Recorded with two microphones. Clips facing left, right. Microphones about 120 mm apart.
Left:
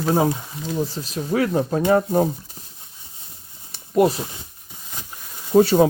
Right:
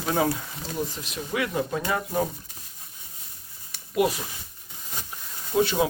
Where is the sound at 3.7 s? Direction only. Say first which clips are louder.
Left 6 dB; 35° left (ahead or behind).